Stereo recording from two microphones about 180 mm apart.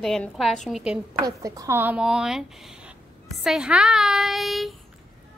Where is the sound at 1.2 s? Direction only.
20° right (ahead or behind); by 4.7 s centre (ahead or behind).